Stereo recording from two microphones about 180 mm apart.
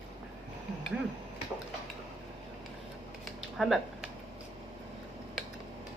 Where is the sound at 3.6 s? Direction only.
Centre (ahead or behind).